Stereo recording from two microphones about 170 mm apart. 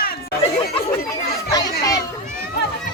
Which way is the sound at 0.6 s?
65° left (ahead or behind).